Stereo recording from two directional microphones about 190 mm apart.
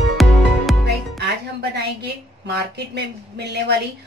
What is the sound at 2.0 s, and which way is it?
A woman's voice, 60° right (ahead or behind).